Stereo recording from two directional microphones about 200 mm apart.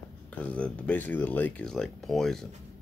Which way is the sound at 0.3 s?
5° left (ahead or behind).